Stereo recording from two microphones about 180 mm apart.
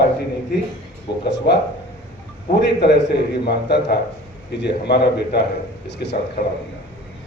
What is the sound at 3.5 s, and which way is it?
A man's voice, 65° left (ahead or behind).